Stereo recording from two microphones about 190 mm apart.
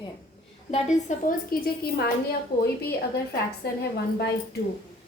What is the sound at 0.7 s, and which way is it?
Speech, 35° left (ahead or behind).